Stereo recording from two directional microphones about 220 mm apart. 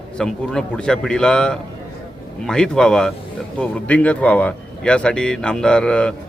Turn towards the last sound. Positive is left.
turn(degrees=5)  # may be behind; listen again after turning